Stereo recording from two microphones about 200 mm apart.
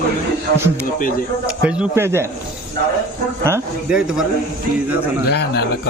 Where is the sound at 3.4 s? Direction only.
10° right (ahead or behind).